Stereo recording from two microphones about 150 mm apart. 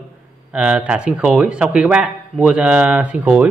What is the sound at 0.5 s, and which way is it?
A man's voice, 5° right (ahead or behind).